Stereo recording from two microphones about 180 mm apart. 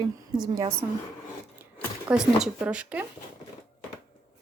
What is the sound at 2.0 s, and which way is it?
Speech, 5° right (ahead or behind).